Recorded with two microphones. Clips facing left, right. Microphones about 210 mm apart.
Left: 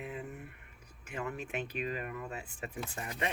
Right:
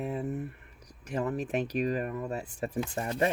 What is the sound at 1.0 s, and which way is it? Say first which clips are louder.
Speech: right 8 dB; 35° right (ahead or behind).